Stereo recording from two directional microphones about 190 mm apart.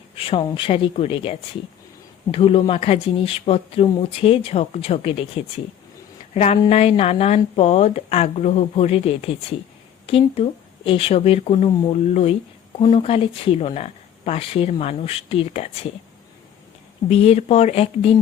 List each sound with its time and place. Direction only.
0.2 s speech: 25° left (ahead or behind)
17.1 s speech: 30° left (ahead or behind)